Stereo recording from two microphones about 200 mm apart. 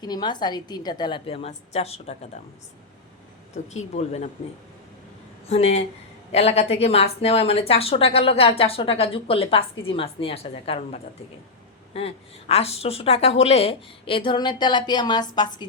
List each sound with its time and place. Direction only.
0.0 s speech: 20° left (ahead or behind)
3.5 s speech: 35° left (ahead or behind)
5.5 s speech: 30° left (ahead or behind)